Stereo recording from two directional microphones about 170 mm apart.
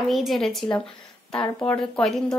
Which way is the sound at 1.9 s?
5° left (ahead or behind).